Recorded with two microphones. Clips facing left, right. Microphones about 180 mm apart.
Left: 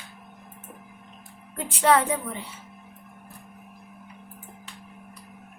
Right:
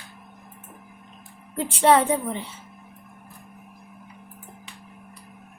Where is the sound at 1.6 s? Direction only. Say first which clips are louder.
Right 3 dB; 25° right (ahead or behind).